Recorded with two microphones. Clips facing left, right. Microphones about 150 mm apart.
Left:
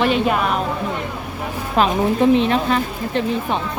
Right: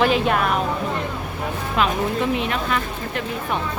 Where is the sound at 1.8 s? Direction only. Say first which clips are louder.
Left 5 dB; 30° left (ahead or behind).